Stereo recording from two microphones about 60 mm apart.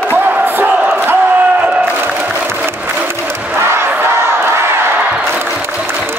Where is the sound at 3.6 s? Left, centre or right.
Right.